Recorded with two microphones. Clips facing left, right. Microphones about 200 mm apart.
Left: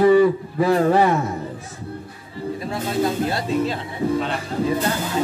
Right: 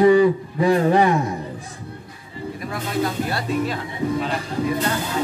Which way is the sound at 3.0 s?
25° left (ahead or behind).